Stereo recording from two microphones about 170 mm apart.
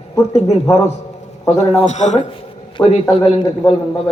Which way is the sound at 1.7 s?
45° left (ahead or behind).